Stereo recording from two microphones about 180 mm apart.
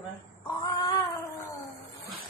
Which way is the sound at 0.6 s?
20° left (ahead or behind).